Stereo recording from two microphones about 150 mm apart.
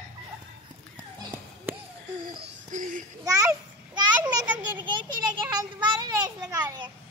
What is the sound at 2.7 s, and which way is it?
Speech, 55° right (ahead or behind).